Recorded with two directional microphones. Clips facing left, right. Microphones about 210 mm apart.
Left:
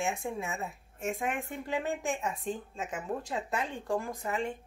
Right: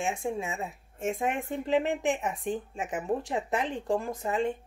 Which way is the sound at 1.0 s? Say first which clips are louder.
Right 4 dB; 25° right (ahead or behind).